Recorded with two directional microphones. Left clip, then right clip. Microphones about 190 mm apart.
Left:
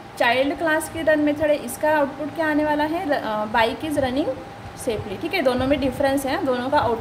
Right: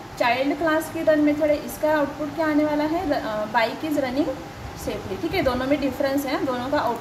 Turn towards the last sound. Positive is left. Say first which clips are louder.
# left 3 dB
turn(degrees=25)  # may be behind; listen again after turning